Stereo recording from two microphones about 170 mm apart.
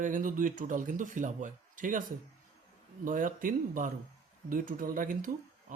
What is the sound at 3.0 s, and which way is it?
Speech, 50° right (ahead or behind).